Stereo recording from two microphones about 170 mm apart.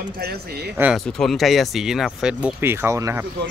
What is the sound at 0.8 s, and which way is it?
Speech, 5° right (ahead or behind).